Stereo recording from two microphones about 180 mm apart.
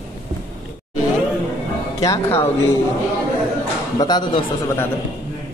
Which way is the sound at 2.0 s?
15° left (ahead or behind).